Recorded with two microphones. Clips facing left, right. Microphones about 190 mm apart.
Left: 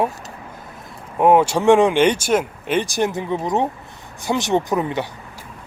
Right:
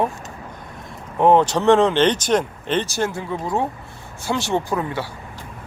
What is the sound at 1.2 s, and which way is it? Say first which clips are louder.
Speech: left 1 dB; 10° left (ahead or behind).